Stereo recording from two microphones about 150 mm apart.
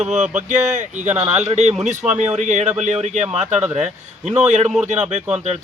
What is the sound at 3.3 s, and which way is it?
Speech, 10° right (ahead or behind).